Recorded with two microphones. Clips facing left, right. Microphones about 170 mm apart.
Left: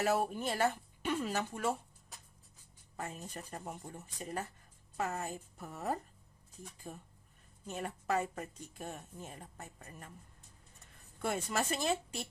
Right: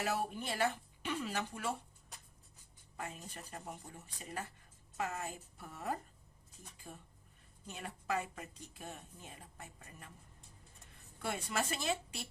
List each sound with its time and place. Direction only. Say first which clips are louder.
0.0 s a woman's voice: left 5 dB; 45° left (ahead or behind)
3.0 s a woman's voice: left 3 dB; 40° left (ahead or behind)
11.2 s a woman's voice: left 3 dB; 45° left (ahead or behind)